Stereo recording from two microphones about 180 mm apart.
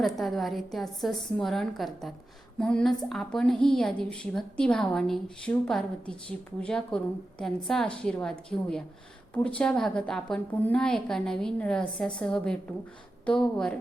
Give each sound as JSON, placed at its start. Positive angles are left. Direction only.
{"t": 0.0, "sound": "a woman's voice", "side_deg": 0}